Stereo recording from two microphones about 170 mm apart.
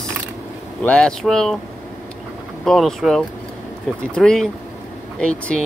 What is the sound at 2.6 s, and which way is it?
Speech, centre (ahead or behind).